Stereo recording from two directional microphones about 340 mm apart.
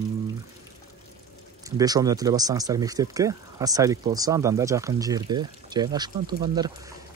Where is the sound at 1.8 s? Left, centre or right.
Centre.